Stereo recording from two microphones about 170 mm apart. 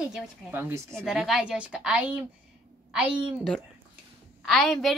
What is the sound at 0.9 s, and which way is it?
A woman's voice, centre (ahead or behind).